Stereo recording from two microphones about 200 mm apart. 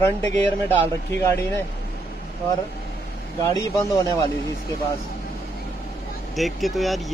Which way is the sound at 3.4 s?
15° left (ahead or behind).